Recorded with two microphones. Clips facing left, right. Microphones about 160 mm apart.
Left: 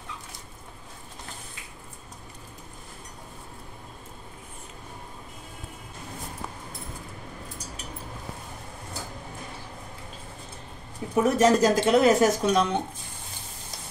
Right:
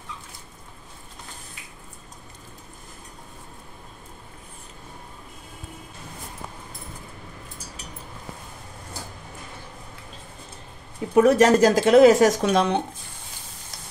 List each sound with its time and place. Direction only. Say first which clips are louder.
11.1 s speech: right 5 dB; 75° right (ahead or behind)